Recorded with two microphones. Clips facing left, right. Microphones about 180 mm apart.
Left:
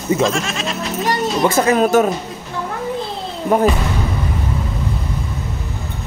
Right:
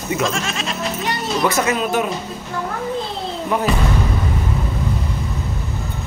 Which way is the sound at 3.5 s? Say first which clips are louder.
Left 6 dB; 45° left (ahead or behind).